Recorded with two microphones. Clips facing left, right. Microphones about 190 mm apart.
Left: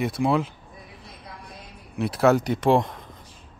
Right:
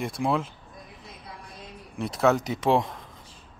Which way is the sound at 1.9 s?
5° left (ahead or behind).